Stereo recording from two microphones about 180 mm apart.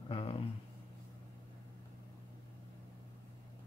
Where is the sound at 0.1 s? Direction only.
30° left (ahead or behind).